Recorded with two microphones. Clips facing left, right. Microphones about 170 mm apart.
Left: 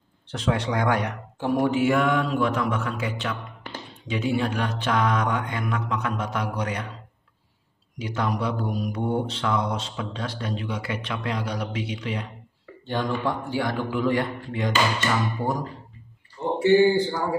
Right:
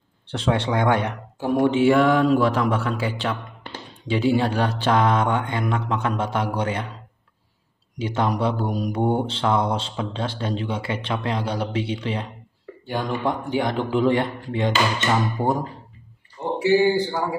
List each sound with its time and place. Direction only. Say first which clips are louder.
0.3 s mantra: right 3 dB; 30° right (ahead or behind)
1.7 s speech: right 7 dB; 30° right (ahead or behind)
4.1 s mantra: right 5 dB; 30° right (ahead or behind)
8.0 s mantra: right 4 dB; 30° right (ahead or behind)
12.8 s mantra: right 1 dB; 15° right (ahead or behind)
16.5 s a man's voice: left 1 dB; 10° right (ahead or behind)